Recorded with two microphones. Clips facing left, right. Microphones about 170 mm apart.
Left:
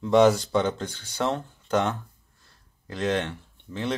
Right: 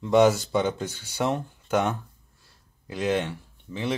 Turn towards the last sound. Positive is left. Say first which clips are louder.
# even
turn(degrees=-5)  # may be behind; listen again after turning